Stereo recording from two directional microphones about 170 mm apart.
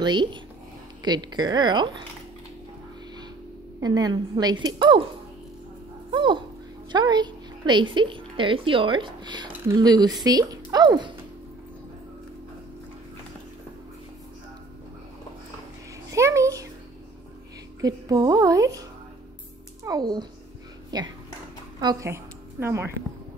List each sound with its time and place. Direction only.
0.0 s speech: 25° right (ahead or behind)
3.8 s speech: 25° right (ahead or behind)
6.1 s a woman's voice: 30° right (ahead or behind)
16.1 s a sound: 15° right (ahead or behind)
17.7 s a child's voice: 20° right (ahead or behind)